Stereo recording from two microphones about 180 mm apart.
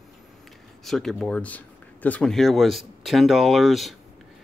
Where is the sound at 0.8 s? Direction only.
Centre (ahead or behind).